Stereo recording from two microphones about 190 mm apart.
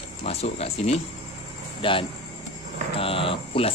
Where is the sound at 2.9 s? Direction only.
30° left (ahead or behind).